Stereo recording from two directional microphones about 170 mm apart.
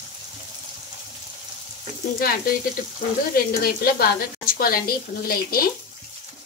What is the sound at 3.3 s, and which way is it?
Speech, 60° left (ahead or behind).